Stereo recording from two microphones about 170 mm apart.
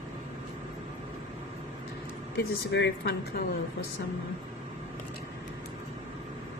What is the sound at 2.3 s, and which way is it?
Speech, 75° left (ahead or behind).